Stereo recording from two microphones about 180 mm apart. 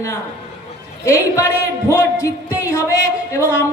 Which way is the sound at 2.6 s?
15° left (ahead or behind).